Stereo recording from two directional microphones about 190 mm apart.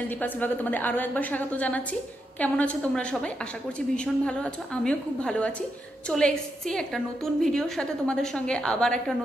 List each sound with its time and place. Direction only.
0.2 s a woman's voice: 10° left (ahead or behind)